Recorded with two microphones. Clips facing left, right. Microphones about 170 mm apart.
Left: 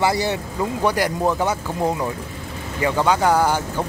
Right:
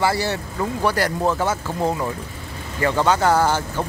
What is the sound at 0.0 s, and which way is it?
Speech, 15° left (ahead or behind).